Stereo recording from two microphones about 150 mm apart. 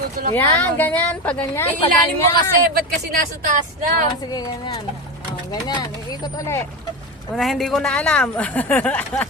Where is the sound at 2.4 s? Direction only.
75° right (ahead or behind).